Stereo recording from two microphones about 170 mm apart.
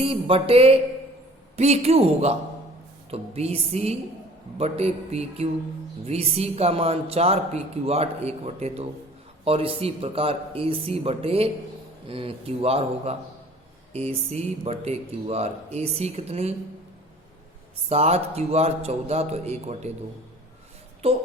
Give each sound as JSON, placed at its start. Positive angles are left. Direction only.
{"t": 0.0, "sound": "speech", "side_deg": -35}
{"t": 17.8, "sound": "speech", "side_deg": -40}